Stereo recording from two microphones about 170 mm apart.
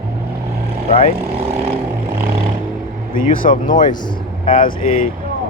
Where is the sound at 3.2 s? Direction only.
55° left (ahead or behind).